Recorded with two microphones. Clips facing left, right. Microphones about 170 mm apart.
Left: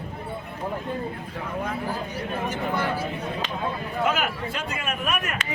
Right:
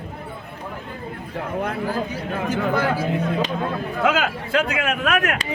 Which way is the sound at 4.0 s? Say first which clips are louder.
Right 4 dB; 90° right.